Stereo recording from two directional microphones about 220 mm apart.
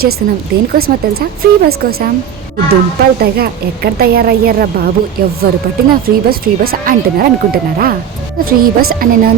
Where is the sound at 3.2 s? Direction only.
45° right (ahead or behind).